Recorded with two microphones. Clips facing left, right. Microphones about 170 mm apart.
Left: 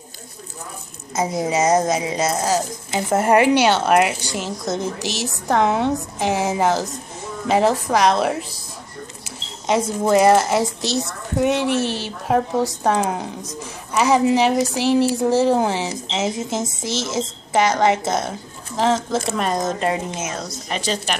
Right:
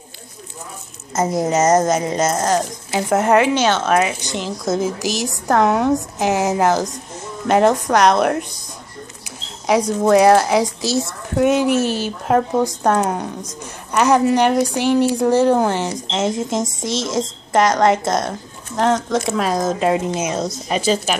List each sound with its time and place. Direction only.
1.5 s speech: centre (ahead or behind)
20.2 s speech: 20° right (ahead or behind)